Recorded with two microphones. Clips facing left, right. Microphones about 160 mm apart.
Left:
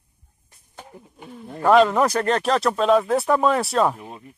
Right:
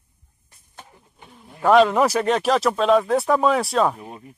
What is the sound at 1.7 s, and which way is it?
Speech, centre (ahead or behind).